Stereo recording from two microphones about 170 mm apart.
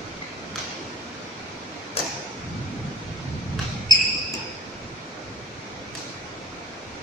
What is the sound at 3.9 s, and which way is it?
Basketball bounce, 25° left (ahead or behind).